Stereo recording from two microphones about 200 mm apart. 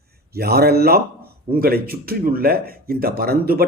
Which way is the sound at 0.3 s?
50° right (ahead or behind).